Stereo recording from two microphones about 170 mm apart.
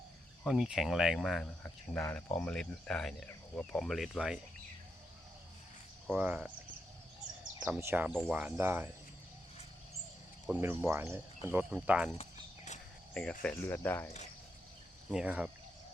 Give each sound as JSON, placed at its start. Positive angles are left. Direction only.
{"t": 0.4, "sound": "speech", "side_deg": -5}
{"t": 6.1, "sound": "speech", "side_deg": -10}
{"t": 7.6, "sound": "speech", "side_deg": -10}
{"t": 10.5, "sound": "speech", "side_deg": -10}
{"t": 12.1, "sound": "a sound", "side_deg": 40}
{"t": 13.4, "sound": "speech", "side_deg": 15}
{"t": 15.1, "sound": "speech", "side_deg": -5}